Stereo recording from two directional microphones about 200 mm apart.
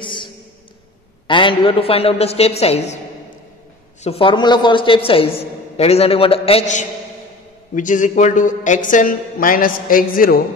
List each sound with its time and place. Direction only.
0.0 s a sound: 25° left (ahead or behind)
1.2 s a woman's voice: 25° left (ahead or behind)
4.0 s a woman's voice: 30° left (ahead or behind); by 10.4 s 45° left (ahead or behind)